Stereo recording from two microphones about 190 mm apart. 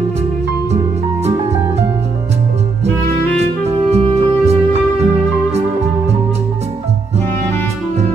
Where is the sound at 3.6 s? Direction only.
35° right (ahead or behind).